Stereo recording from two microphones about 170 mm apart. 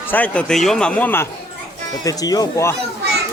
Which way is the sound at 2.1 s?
20° left (ahead or behind).